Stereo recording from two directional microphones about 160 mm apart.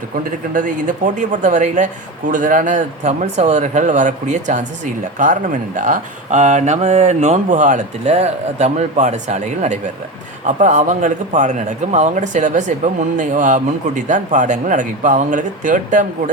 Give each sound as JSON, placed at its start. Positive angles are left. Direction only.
{"t": 0.3, "sound": "a man's voice", "side_deg": -55}